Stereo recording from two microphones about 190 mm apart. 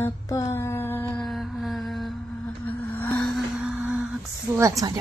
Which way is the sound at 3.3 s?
5° right (ahead or behind).